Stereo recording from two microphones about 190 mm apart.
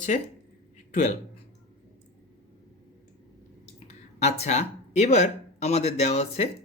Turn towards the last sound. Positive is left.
turn(degrees=35)  # may be behind; listen again after turning